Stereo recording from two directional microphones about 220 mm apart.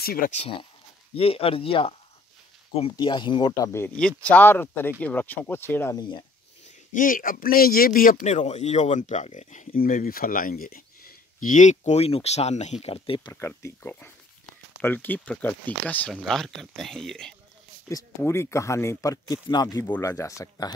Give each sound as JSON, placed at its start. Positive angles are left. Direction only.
{"t": 0.0, "sound": "speech", "side_deg": 40}
{"t": 0.4, "sound": "speech", "side_deg": 25}
{"t": 6.9, "sound": "speech", "side_deg": 40}
{"t": 13.3, "sound": "speech", "side_deg": 10}